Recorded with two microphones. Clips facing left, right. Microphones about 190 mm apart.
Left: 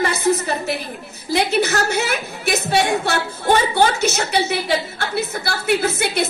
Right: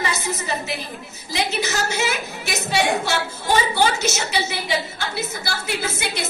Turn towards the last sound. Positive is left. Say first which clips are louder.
# left 7 dB
turn(degrees=60)  # may be behind; listen again after turning